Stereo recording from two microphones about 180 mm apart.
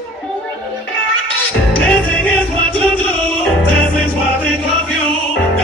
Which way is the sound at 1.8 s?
5° left (ahead or behind).